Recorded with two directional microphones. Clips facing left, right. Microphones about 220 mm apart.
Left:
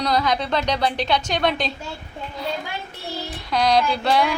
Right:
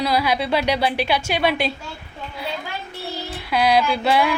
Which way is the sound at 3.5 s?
5° right (ahead or behind).